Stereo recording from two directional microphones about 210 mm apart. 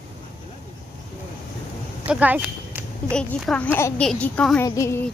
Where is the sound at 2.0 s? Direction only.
5° right (ahead or behind).